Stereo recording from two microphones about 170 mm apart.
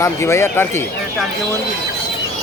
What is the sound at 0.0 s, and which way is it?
Speech, 15° left (ahead or behind).